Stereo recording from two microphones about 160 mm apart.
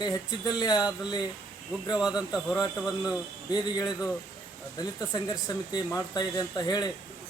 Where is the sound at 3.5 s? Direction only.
25° left (ahead or behind).